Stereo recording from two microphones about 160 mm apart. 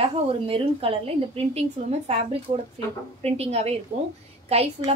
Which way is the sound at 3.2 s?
40° right (ahead or behind).